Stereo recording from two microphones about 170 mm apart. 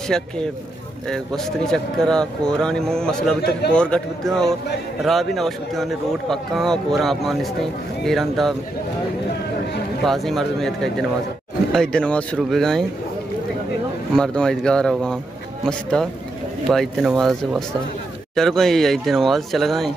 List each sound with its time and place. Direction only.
0.1 s a man's voice: 5° left (ahead or behind)
10.0 s a man's voice: centre (ahead or behind)
14.1 s a man's voice: 5° left (ahead or behind)